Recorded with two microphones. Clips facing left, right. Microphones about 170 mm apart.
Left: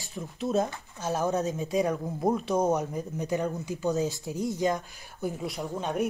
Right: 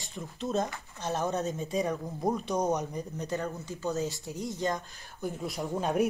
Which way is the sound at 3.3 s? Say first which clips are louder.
Left 6 dB; 15° left (ahead or behind).